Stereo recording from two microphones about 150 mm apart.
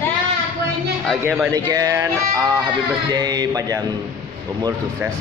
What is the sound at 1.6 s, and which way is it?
Mantra, 25° right (ahead or behind).